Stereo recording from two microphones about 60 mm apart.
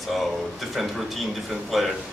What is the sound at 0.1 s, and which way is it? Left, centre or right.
Speech, centre.